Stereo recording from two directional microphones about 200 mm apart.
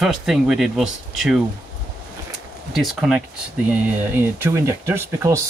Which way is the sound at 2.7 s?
Centre (ahead or behind).